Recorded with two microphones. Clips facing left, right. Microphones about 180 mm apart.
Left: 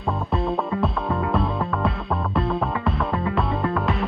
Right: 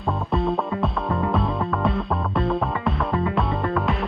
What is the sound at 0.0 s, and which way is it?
Music, centre (ahead or behind).